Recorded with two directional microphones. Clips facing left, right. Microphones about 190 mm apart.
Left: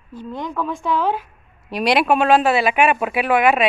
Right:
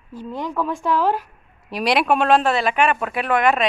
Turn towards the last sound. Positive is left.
turn(degrees=5)  # may be behind; listen again after turning